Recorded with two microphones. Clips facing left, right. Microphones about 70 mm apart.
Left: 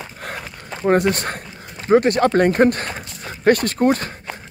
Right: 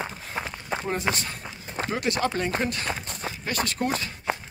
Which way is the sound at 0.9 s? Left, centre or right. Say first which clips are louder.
Left 13 dB; left.